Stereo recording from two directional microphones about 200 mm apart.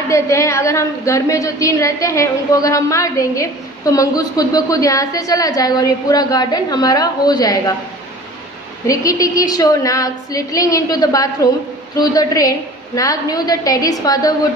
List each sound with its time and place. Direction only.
0.1 s a woman's voice: 15° left (ahead or behind)
8.8 s a woman's voice: 15° left (ahead or behind)